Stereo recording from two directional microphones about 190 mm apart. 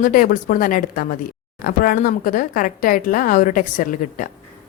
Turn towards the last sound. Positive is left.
turn(degrees=45)  # may be behind; listen again after turning